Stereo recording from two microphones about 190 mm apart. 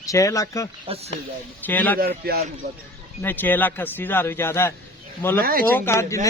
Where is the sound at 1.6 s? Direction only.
10° left (ahead or behind).